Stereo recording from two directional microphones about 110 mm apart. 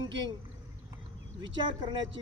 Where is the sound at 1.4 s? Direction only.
45° right (ahead or behind).